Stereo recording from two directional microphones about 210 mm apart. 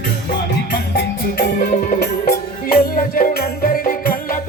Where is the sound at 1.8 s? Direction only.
45° left (ahead or behind).